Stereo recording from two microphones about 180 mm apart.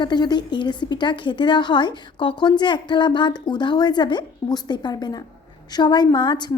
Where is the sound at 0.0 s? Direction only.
25° left (ahead or behind).